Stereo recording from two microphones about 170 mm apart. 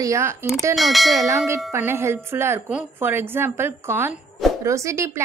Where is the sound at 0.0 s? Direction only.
15° right (ahead or behind).